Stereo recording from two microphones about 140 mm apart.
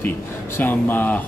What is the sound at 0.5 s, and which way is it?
Speech, 15° left (ahead or behind).